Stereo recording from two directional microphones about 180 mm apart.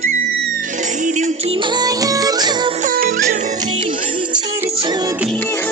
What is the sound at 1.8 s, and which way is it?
Music, 20° right (ahead or behind).